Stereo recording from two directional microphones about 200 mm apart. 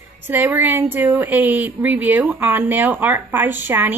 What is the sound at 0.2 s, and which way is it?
A woman's voice, 10° right (ahead or behind).